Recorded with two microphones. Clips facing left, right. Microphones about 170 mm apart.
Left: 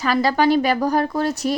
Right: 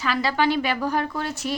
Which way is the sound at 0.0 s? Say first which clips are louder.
Left 5 dB; 40° left (ahead or behind).